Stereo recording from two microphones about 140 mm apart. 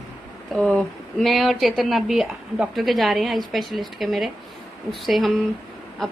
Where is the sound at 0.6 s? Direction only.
5° left (ahead or behind).